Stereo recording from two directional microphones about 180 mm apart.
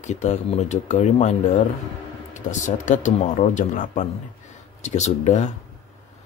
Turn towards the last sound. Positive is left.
turn(degrees=40)  # may be behind; listen again after turning